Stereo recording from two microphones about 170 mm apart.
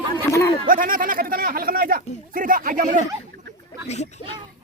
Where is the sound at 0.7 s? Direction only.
55° right (ahead or behind).